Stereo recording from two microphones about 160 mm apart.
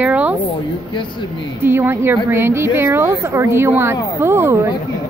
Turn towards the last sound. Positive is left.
turn(degrees=-15)  # may be behind; listen again after turning